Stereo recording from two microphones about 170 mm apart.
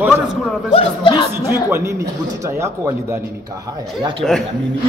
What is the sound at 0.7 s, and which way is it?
Speech, 30° left (ahead or behind).